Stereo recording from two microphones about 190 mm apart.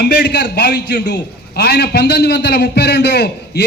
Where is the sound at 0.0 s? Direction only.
60° left (ahead or behind).